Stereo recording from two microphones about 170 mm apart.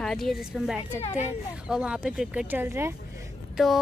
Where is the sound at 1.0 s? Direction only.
40° left (ahead or behind).